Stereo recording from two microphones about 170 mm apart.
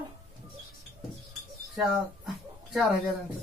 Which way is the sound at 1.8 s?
Centre (ahead or behind).